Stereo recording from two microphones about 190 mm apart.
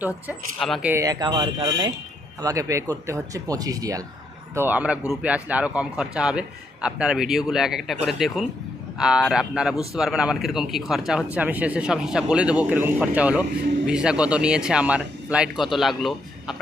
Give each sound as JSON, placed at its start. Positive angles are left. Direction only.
{"t": 0.3, "sound": "a man's voice", "side_deg": 0}